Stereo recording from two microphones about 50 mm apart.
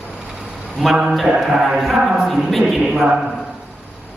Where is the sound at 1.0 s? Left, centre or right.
Centre.